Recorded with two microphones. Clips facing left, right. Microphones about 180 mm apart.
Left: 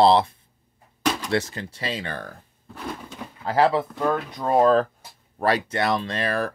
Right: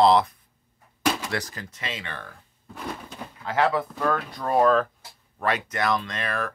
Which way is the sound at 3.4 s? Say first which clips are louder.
Left 3 dB; 35° left (ahead or behind).